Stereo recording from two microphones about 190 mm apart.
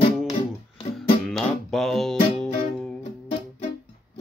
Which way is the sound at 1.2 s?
Centre (ahead or behind).